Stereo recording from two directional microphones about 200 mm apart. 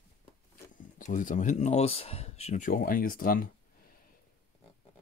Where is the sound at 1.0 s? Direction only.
40° left (ahead or behind).